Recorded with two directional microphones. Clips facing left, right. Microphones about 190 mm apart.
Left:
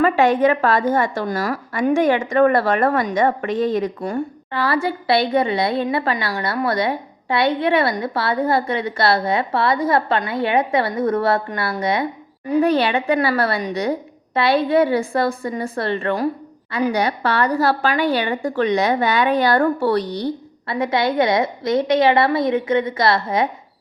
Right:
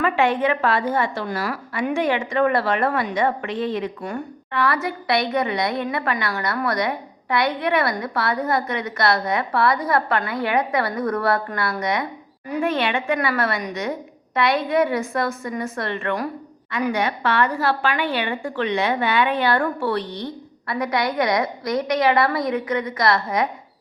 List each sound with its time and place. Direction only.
0.0 s a woman's voice: 40° left (ahead or behind)